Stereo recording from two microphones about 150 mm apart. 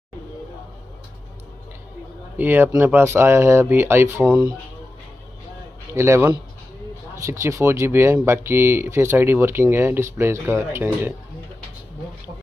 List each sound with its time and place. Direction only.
2.3 s speech: 15° right (ahead or behind)
4.2 s speech: 5° right (ahead or behind)
5.9 s speech: 15° right (ahead or behind)